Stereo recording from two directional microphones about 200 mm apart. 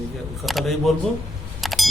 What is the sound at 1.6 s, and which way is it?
Vehicle, centre (ahead or behind).